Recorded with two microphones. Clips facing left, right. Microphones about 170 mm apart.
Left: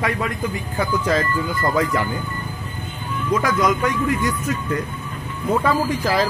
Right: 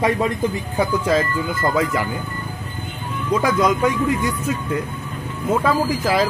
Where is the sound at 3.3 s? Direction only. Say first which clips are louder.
Right 2 dB; 10° right (ahead or behind).